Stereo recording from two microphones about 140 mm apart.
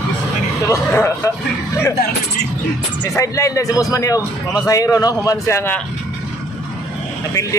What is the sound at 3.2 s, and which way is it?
A man's voice, 20° left (ahead or behind).